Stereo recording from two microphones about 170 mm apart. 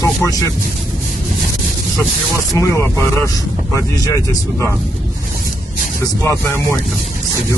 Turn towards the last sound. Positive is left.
turn(degrees=15)  # may be behind; listen again after turning